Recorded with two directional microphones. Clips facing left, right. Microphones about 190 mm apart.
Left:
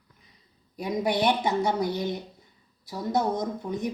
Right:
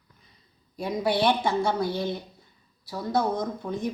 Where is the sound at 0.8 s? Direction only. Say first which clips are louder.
Right 1 dB; 20° left (ahead or behind).